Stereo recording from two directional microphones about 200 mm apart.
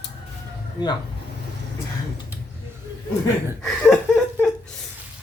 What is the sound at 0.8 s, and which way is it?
Speech, 20° left (ahead or behind).